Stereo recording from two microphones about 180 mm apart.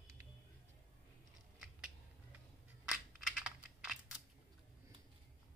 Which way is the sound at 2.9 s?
5° right (ahead or behind).